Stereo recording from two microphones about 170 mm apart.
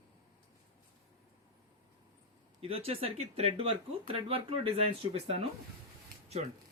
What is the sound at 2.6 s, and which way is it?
Speech, 35° right (ahead or behind).